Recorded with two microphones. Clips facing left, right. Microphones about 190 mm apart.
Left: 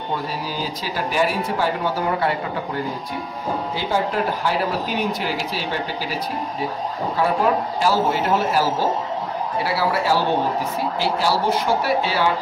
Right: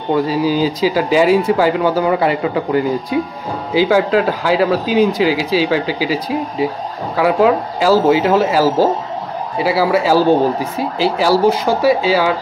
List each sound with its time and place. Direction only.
0.1 s speech: 90° right